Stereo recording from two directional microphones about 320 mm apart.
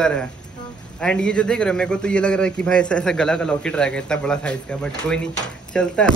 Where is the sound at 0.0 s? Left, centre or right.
Centre.